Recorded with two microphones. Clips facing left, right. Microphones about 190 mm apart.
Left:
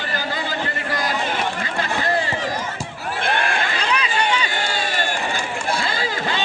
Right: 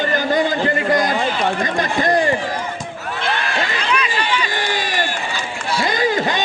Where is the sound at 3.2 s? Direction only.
55° left (ahead or behind).